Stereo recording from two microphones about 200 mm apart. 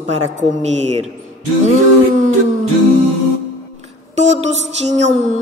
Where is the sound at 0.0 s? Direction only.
35° right (ahead or behind).